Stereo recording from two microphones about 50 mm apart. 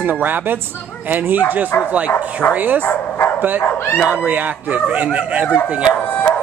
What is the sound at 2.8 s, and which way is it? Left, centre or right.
Speech, left.